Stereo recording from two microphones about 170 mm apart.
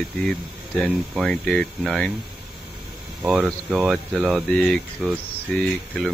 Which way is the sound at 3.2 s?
5° right (ahead or behind).